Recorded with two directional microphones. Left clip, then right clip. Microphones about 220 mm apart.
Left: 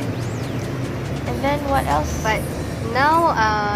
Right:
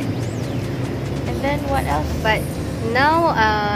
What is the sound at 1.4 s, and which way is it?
Speech, 15° left (ahead or behind).